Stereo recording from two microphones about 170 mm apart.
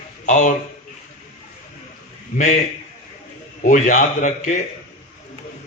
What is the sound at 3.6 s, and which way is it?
Speech, 50° left (ahead or behind).